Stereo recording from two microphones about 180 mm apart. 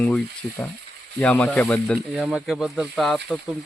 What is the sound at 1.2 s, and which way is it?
Speech, 5° left (ahead or behind).